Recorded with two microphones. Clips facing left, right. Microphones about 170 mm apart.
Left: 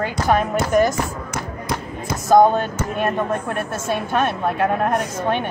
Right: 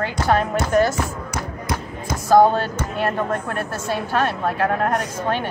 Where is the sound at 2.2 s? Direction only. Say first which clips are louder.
Left 1 dB; 20° left (ahead or behind).